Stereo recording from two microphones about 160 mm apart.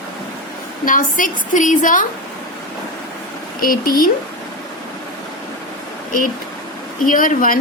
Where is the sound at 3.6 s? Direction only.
65° left (ahead or behind).